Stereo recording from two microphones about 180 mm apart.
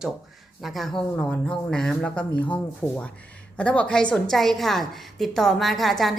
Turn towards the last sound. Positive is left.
turn(degrees=0)  # may be behind; listen again after turning